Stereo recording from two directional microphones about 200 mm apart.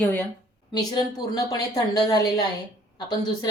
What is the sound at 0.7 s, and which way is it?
Speech, 20° left (ahead or behind).